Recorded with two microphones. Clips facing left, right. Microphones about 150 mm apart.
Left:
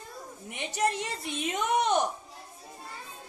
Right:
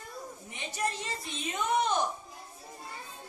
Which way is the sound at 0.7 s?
70° left (ahead or behind).